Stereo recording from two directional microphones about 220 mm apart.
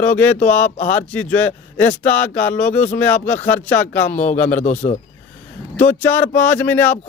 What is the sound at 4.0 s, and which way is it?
Speech, 35° left (ahead or behind).